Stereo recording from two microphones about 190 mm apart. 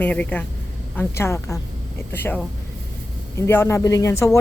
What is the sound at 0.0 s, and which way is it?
Speech, 10° left (ahead or behind).